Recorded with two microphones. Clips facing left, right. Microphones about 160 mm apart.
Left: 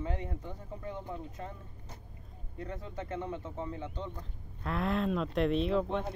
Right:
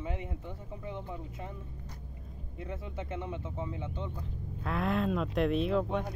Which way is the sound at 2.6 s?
10° right (ahead or behind).